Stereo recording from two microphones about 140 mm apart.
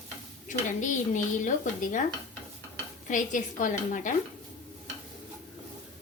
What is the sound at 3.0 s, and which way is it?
Speech, 65° left (ahead or behind).